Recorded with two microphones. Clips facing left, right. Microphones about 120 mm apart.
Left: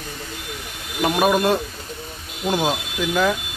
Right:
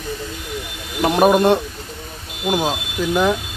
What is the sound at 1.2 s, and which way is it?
Speech, 25° right (ahead or behind).